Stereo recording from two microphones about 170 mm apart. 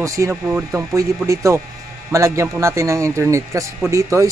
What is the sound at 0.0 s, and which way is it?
Speech, 15° right (ahead or behind).